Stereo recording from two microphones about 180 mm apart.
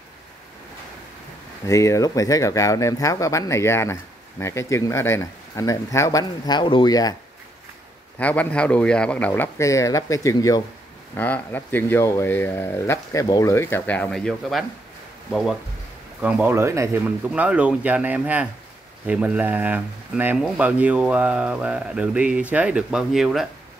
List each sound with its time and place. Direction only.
1.7 s speech: 15° left (ahead or behind)
8.2 s speech: 10° left (ahead or behind)
16.2 s speech: 5° right (ahead or behind)